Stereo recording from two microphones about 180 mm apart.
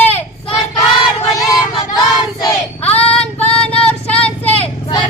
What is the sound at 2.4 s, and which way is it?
Child singing, 15° left (ahead or behind).